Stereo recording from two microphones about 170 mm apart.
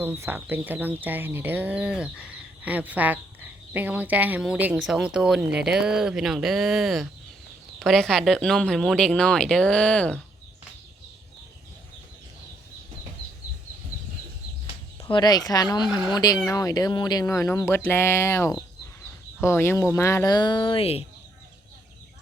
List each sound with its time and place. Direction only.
0.0 s speech: 10° right (ahead or behind); by 10.2 s 5° left (ahead or behind)
15.0 s speech: 25° left (ahead or behind)